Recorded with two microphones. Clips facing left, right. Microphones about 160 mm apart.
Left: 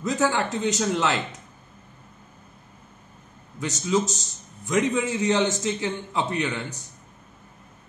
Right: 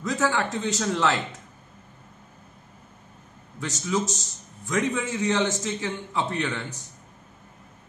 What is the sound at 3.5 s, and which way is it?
A man's voice, 20° left (ahead or behind).